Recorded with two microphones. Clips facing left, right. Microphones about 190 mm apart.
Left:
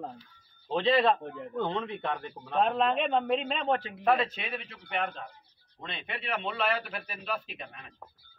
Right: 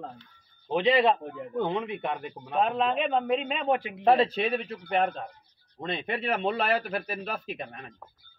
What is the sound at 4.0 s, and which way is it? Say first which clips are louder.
A man's voice: right 9 dB; 30° right (ahead or behind).